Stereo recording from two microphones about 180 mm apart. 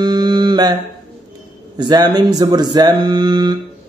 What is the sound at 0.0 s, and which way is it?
Mantra, 25° right (ahead or behind).